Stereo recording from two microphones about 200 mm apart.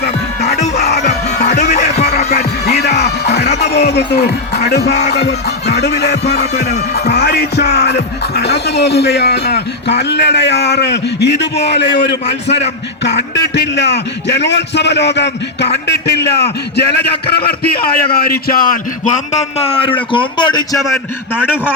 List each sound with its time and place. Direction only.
0.4 s music: 35° left (ahead or behind)
2.0 s music: 50° left (ahead or behind)
3.9 s a man's voice: 55° left (ahead or behind)
4.9 s speech: 35° left (ahead or behind)
5.1 s music: 55° left (ahead or behind)
12.5 s speech: 30° left (ahead or behind)
13.3 s a man's voice: 60° left (ahead or behind); by 20.7 s 20° left (ahead or behind)